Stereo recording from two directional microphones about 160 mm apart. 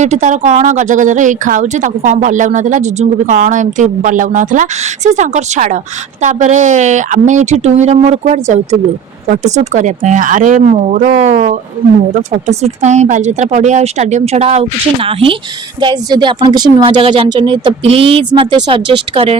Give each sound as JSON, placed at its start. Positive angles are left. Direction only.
{"t": 0.0, "sound": "speech", "side_deg": -50}